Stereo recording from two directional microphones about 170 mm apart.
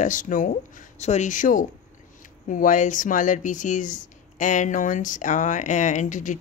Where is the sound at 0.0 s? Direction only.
50° left (ahead or behind).